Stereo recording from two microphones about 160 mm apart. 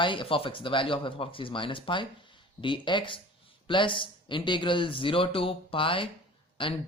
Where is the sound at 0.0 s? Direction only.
30° left (ahead or behind).